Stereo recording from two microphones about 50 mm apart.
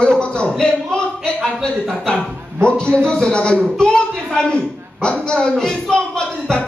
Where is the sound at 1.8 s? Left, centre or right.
Centre.